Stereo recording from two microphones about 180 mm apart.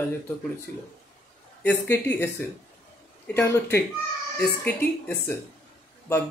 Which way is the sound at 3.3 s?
15° left (ahead or behind).